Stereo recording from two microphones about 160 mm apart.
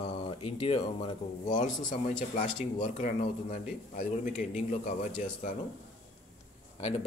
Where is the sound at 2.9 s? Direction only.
50° left (ahead or behind).